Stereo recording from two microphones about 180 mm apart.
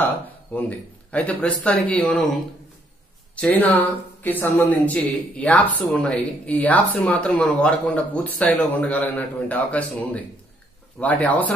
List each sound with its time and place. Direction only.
0.0 s speech: 10° left (ahead or behind)
3.3 s speech: 5° left (ahead or behind)